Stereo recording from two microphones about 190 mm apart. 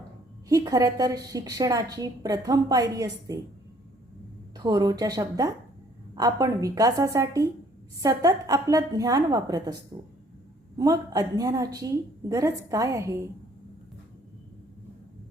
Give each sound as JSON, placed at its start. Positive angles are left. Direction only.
{"t": 0.4, "sound": "a woman's voice", "side_deg": -20}
{"t": 4.5, "sound": "a woman's voice", "side_deg": -20}
{"t": 10.8, "sound": "a woman's voice", "side_deg": -20}